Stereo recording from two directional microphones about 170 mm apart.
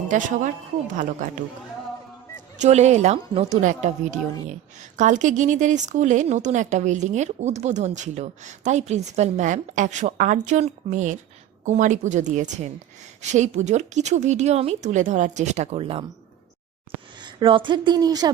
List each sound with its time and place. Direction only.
0.1 s speech: 45° right (ahead or behind)
2.3 s speech: 45° right (ahead or behind)
17.2 s speech: 30° right (ahead or behind)